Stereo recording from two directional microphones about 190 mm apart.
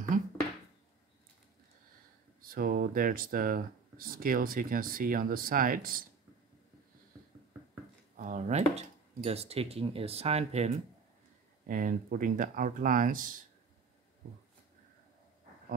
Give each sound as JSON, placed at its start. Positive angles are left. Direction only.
{"t": 2.4, "sound": "speech", "side_deg": -50}
{"t": 8.2, "sound": "speech", "side_deg": -40}
{"t": 11.6, "sound": "speech", "side_deg": -45}